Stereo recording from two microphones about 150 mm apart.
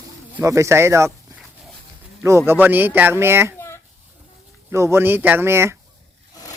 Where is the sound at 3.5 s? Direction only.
15° left (ahead or behind).